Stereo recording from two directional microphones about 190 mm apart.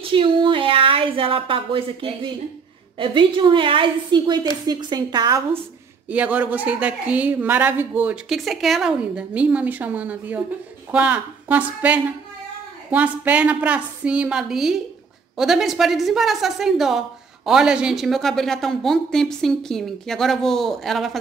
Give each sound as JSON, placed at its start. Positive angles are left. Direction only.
{"t": 0.0, "sound": "a woman's voice", "side_deg": -25}
{"t": 6.0, "sound": "a woman's voice", "side_deg": -5}